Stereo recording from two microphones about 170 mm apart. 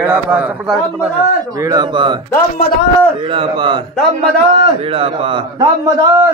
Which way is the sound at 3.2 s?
30° right (ahead or behind).